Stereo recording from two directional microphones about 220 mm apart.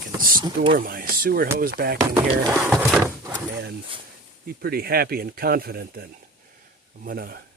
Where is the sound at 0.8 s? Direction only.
40° right (ahead or behind).